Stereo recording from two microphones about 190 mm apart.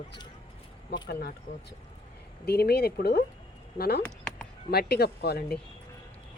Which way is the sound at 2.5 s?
55° left (ahead or behind).